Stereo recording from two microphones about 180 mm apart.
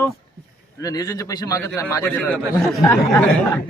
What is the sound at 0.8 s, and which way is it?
A man's voice, 20° left (ahead or behind).